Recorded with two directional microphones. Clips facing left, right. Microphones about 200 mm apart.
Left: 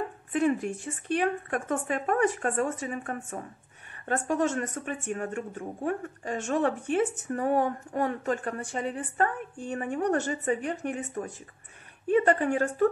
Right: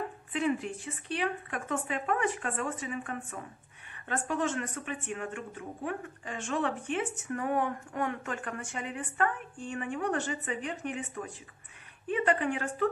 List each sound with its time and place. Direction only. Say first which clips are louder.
0.3 s speech: left 5 dB; 45° left (ahead or behind)